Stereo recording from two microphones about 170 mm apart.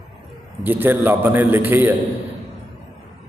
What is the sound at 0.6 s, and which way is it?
A man's voice, 10° right (ahead or behind).